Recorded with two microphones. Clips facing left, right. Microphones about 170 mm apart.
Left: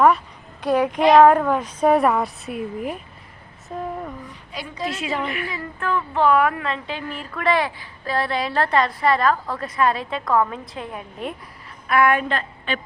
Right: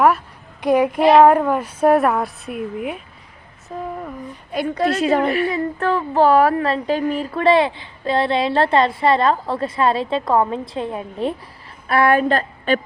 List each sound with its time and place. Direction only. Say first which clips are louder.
0.6 s a child's voice: right 3 dB; 10° right (ahead or behind)
4.5 s a woman's voice: right 9 dB; 55° right (ahead or behind)
4.9 s a woman's voice: right 10 dB; 40° right (ahead or behind)